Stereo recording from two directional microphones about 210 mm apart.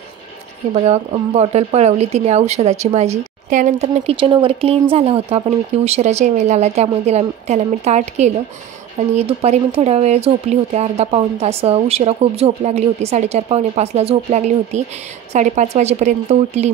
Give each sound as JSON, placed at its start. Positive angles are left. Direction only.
{"t": 0.8, "sound": "speech", "side_deg": -30}